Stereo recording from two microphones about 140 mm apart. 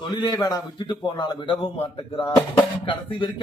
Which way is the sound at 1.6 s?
45° left (ahead or behind).